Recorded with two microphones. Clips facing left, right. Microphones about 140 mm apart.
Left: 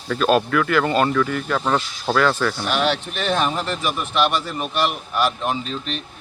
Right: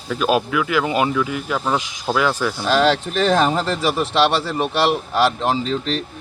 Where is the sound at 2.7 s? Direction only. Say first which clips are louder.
Right 9 dB; 90° right.